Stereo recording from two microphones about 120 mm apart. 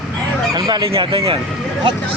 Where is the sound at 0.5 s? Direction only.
30° right (ahead or behind).